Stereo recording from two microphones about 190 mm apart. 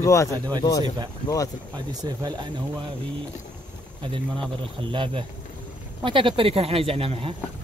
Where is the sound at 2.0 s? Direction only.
20° right (ahead or behind).